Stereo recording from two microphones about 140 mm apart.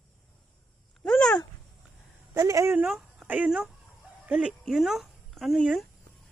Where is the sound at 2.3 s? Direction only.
20° right (ahead or behind).